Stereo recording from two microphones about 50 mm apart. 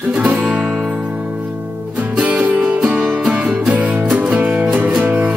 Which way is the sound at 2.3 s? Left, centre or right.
Right.